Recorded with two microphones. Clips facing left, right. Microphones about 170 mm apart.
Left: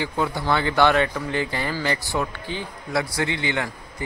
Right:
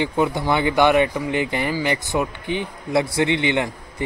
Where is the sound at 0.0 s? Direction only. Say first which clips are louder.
Right 4 dB; 20° right (ahead or behind).